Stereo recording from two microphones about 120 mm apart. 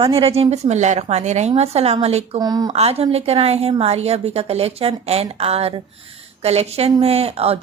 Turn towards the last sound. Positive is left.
turn(degrees=-55)  # may be behind; listen again after turning